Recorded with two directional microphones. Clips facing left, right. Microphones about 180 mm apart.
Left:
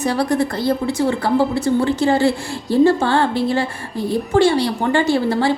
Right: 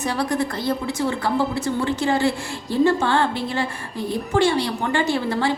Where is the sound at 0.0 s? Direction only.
35° left (ahead or behind).